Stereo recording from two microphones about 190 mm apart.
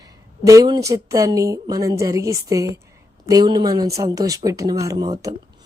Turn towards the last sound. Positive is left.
turn(degrees=-30)  # may be behind; listen again after turning